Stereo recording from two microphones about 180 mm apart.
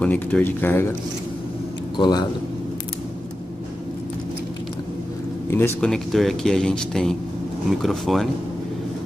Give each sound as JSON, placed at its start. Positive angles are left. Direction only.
{"t": 0.0, "sound": "speech", "side_deg": 10}
{"t": 2.0, "sound": "a man's voice", "side_deg": 20}
{"t": 5.5, "sound": "speech", "side_deg": 10}